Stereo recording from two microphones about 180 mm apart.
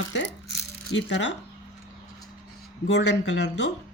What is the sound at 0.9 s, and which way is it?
Speech, 85° left.